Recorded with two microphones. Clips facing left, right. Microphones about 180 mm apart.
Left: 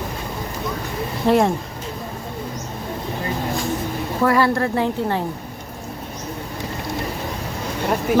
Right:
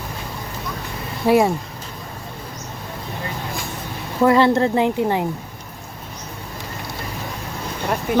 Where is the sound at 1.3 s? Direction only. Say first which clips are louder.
Right 1 dB; 5° right (ahead or behind).